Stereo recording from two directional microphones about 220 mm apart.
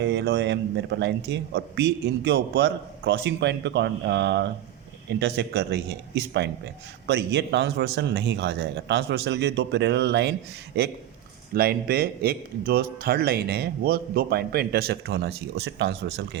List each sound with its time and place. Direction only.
0.0 s speech: 50° right (ahead or behind)